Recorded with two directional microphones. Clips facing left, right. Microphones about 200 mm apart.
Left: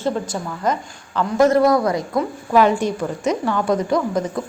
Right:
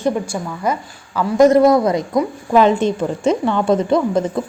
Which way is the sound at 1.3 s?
20° right (ahead or behind).